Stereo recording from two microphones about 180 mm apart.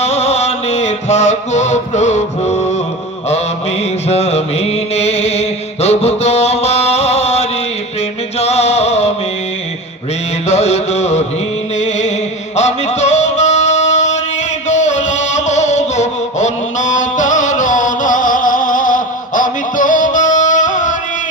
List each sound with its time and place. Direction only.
0.0 s mantra: 35° left (ahead or behind)
4.1 s mantra: 35° left (ahead or behind)
8.4 s music: 35° left (ahead or behind)
10.4 s a sound: 40° left (ahead or behind)
11.8 s music: 40° left (ahead or behind)